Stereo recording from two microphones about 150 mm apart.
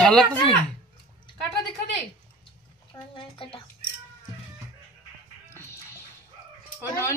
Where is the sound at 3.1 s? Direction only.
35° left (ahead or behind).